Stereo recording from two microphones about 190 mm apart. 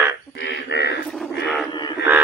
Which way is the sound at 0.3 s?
65° left (ahead or behind).